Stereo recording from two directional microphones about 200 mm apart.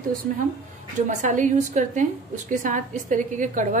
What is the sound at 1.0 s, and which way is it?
A woman's voice, 40° right (ahead or behind).